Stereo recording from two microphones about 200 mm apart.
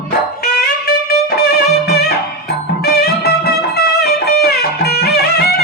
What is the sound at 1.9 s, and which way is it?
Music, 50° left (ahead or behind).